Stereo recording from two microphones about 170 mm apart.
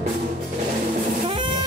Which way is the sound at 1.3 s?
30° right (ahead or behind).